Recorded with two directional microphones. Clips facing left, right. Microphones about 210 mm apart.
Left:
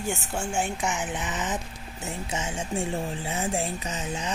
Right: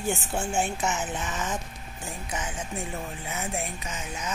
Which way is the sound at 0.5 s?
15° left (ahead or behind).